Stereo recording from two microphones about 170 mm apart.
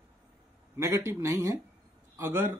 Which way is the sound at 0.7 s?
15° right (ahead or behind).